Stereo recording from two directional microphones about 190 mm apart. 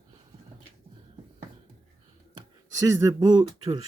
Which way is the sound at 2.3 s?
20° right (ahead or behind).